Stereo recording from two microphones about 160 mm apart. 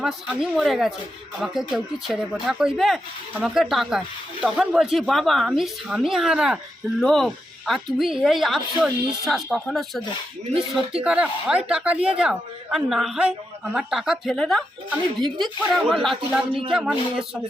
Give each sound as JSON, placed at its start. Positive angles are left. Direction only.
{"t": 0.0, "sound": "speech", "side_deg": 0}
{"t": 11.0, "sound": "speech", "side_deg": -5}
{"t": 15.6, "sound": "speech", "side_deg": 0}
{"t": 16.5, "sound": "speech", "side_deg": -30}
{"t": 16.7, "sound": "speech", "side_deg": -5}